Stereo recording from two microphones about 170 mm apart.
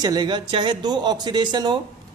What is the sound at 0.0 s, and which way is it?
A woman's voice, 25° right (ahead or behind).